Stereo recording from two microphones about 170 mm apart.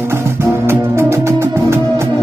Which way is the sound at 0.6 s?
15° right (ahead or behind).